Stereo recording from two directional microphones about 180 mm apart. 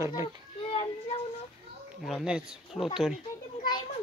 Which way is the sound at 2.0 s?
Centre (ahead or behind).